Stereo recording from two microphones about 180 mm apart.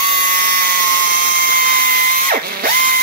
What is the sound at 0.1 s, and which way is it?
Dental drill, 50° right (ahead or behind).